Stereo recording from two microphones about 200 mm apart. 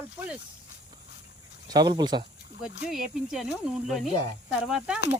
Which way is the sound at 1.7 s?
20° right (ahead or behind).